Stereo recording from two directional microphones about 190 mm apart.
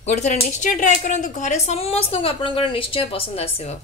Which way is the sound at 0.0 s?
40° left (ahead or behind).